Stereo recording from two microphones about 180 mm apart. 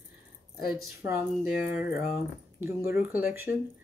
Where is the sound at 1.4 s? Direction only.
55° left (ahead or behind).